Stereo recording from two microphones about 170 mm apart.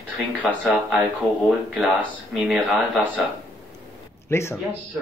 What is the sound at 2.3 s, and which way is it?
Speech, 5° right (ahead or behind).